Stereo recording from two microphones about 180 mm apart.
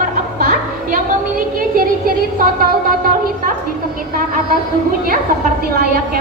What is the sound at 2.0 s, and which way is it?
Speech, 50° right (ahead or behind).